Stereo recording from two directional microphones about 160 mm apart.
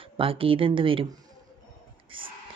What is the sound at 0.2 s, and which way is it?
Speech, 35° right (ahead or behind).